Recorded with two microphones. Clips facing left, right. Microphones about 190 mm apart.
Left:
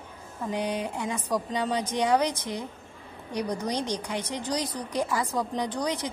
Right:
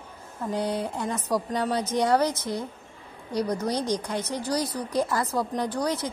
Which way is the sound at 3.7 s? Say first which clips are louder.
Right 3 dB; 10° right (ahead or behind).